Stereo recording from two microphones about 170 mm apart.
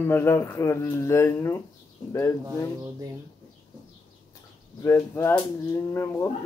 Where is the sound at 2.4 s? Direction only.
20° right (ahead or behind).